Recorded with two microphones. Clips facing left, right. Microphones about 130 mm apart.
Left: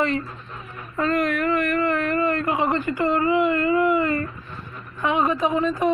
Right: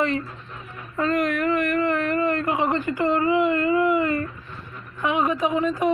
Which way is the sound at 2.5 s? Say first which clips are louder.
Left 1 dB; 25° right (ahead or behind).